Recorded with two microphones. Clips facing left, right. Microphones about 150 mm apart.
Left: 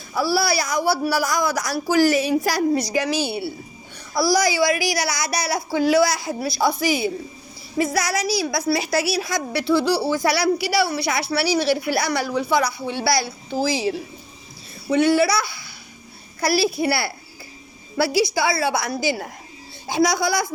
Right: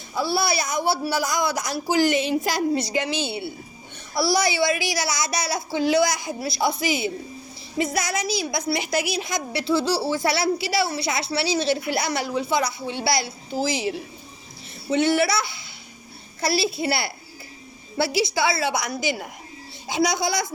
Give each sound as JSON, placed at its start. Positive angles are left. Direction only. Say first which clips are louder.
{"t": 0.2, "sound": "a woman's voice", "louder": "left 3 dB", "side_deg": -20}
{"t": 14.8, "sound": "a woman's voice", "louder": "left 3 dB", "side_deg": -25}